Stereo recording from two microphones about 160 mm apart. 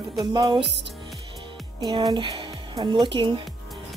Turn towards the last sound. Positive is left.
turn(degrees=-30)  # may be behind; listen again after turning